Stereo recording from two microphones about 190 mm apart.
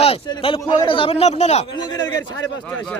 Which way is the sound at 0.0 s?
30° left (ahead or behind).